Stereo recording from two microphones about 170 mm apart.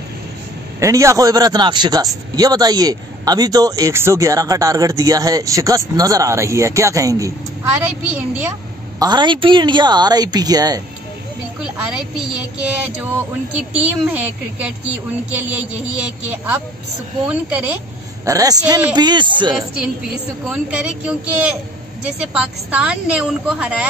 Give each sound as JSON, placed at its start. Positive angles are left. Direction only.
{"t": 0.7, "sound": "a man's voice", "side_deg": -20}
{"t": 7.8, "sound": "speech", "side_deg": -5}
{"t": 9.0, "sound": "a man's voice", "side_deg": -25}
{"t": 11.6, "sound": "a woman's voice", "side_deg": -5}
{"t": 18.2, "sound": "a man's voice", "side_deg": -20}
{"t": 20.4, "sound": "a woman's voice", "side_deg": -5}
{"t": 22.3, "sound": "speech", "side_deg": -5}